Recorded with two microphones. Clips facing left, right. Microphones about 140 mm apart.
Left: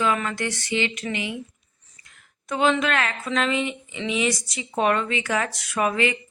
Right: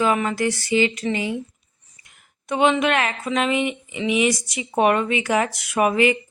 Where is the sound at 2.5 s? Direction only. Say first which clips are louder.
Right 3 dB; 20° right (ahead or behind).